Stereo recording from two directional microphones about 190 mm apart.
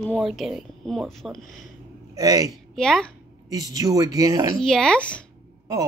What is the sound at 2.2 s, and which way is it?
Speech, 20° right (ahead or behind).